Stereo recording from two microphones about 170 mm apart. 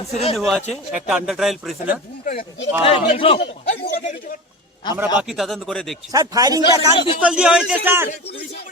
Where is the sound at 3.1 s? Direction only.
35° left (ahead or behind).